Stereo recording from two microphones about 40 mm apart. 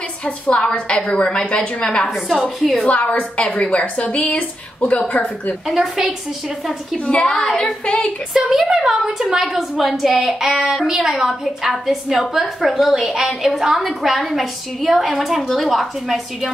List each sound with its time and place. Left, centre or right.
0.2 s a woman's voice: left
2.1 s a woman's voice: centre
2.9 s a woman's voice: left
5.7 s a woman's voice: centre
7.1 s a woman's voice: left
8.5 s a woman's voice: centre